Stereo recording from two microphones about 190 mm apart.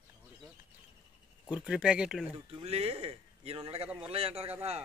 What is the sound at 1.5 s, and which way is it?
Speech, 5° right (ahead or behind).